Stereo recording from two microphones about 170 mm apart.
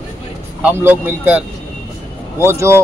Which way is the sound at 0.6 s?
10° right (ahead or behind).